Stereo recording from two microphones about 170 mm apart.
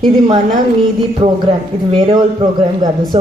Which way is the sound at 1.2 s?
30° right (ahead or behind).